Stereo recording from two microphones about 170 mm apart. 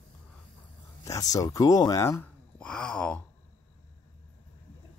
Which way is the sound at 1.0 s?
20° left (ahead or behind).